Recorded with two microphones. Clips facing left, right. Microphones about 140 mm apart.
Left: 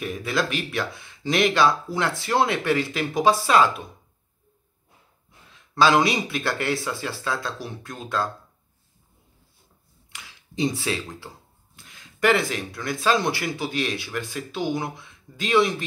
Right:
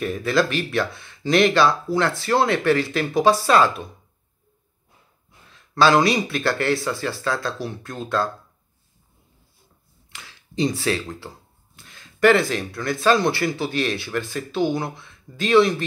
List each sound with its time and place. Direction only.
0.0 s speech: 10° left (ahead or behind)
6.0 s speech: 15° left (ahead or behind)
10.1 s speech: 15° left (ahead or behind)